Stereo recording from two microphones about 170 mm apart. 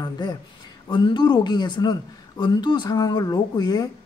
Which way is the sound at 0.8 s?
25° left (ahead or behind).